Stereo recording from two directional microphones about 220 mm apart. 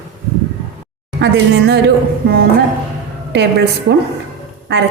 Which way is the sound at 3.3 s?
50° right (ahead or behind).